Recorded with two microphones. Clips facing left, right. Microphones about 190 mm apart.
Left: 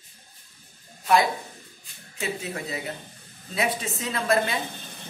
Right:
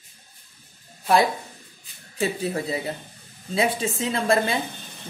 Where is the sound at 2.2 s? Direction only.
30° right (ahead or behind).